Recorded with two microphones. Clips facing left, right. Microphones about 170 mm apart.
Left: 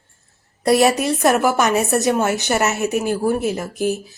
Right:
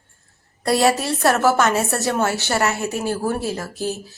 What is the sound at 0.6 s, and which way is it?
A woman's voice, 20° left (ahead or behind).